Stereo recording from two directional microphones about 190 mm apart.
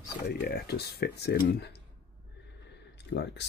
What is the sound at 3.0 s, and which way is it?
Speech, 65° left (ahead or behind).